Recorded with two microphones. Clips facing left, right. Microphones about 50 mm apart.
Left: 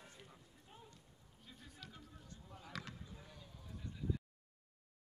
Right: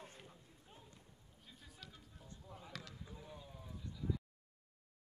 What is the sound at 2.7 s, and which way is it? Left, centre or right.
Basketball bounce, centre.